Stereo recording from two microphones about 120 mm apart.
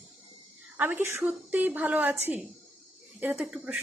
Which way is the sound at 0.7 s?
15° right (ahead or behind).